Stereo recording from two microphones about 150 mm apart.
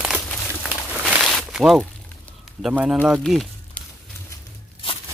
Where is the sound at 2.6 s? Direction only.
5° right (ahead or behind).